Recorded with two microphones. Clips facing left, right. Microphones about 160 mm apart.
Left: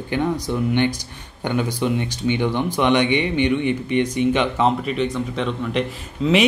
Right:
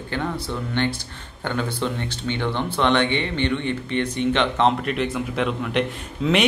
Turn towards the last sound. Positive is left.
turn(degrees=0)  # may be behind; listen again after turning